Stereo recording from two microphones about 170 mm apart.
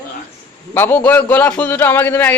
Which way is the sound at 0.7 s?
10° left (ahead or behind).